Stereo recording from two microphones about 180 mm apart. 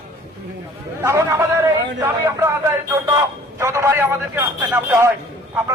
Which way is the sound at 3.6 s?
15° right (ahead or behind).